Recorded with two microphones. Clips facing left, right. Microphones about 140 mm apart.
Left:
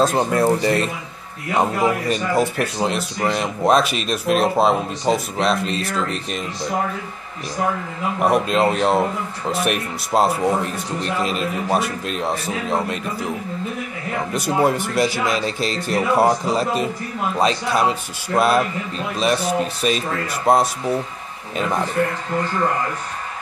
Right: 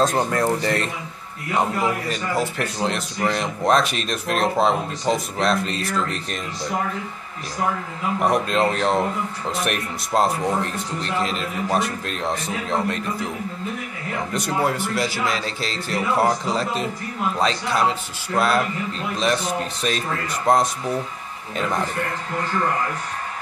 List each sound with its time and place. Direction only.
0.0 s a man's voice: 10° left (ahead or behind)
8.2 s a man's voice: 10° left (ahead or behind)
14.6 s a man's voice: 15° left (ahead or behind)